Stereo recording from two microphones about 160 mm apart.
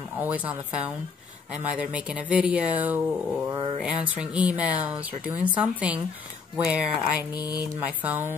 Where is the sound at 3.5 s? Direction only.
35° right (ahead or behind).